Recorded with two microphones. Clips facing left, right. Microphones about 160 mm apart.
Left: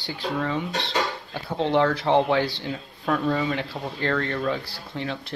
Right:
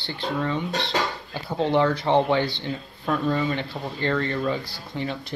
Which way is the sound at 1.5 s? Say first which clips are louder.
Even; centre (ahead or behind).